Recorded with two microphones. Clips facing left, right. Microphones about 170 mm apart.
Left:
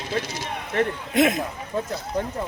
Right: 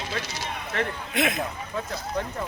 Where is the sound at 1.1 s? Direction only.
40° left (ahead or behind).